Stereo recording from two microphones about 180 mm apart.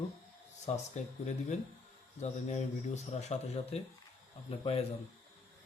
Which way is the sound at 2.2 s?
40° left (ahead or behind).